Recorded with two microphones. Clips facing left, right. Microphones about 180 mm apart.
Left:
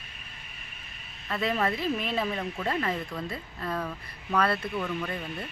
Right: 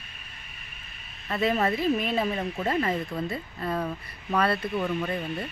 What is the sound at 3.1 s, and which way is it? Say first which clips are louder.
Speech: right 4 dB; 30° right (ahead or behind).